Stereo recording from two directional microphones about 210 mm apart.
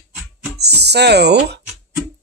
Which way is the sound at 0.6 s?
50° right (ahead or behind).